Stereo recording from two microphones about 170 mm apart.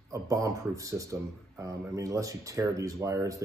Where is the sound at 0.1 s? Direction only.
20° right (ahead or behind).